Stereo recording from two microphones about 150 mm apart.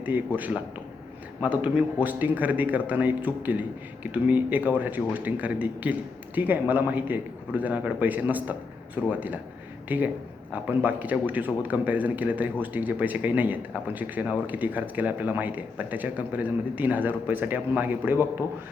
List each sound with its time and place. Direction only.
1.4 s speech: 10° right (ahead or behind)